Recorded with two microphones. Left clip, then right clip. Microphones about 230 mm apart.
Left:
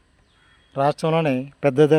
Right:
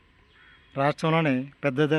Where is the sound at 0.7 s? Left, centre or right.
Centre.